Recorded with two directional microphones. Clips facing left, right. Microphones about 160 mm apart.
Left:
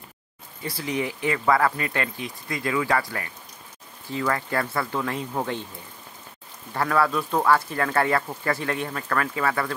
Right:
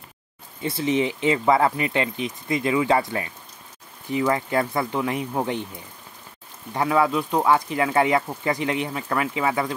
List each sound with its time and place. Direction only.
0.6 s speech: 20° right (ahead or behind)
6.7 s speech: 15° right (ahead or behind)